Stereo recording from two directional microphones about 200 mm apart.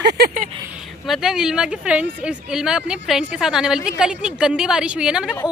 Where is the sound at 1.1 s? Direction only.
5° right (ahead or behind).